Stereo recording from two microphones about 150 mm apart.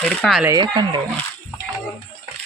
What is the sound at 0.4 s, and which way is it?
Speech, 30° right (ahead or behind).